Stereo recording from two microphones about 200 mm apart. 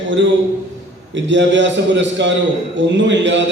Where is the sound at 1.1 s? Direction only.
65° right (ahead or behind).